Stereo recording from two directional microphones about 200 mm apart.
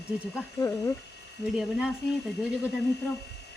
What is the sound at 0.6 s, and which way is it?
Speech, 15° left (ahead or behind).